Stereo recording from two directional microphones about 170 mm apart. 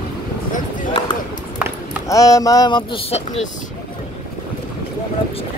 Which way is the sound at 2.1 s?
20° left (ahead or behind).